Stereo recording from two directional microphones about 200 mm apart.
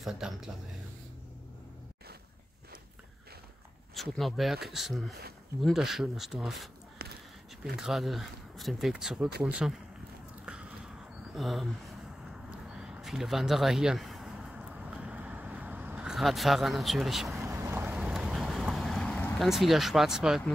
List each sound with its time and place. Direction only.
0.0 s speech: centre (ahead or behind)
3.9 s speech: centre (ahead or behind)
7.0 s a sound: 55° right (ahead or behind)
7.7 s speech: centre (ahead or behind)
10.4 s biting: 5° right (ahead or behind)
11.3 s a sound: centre (ahead or behind)
17.4 s boat: 15° right (ahead or behind)